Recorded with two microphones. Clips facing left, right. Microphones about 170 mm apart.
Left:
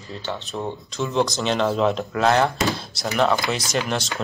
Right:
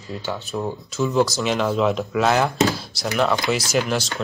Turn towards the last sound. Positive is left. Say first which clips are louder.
# right 3 dB
turn(degrees=0)  # may be behind; listen again after turning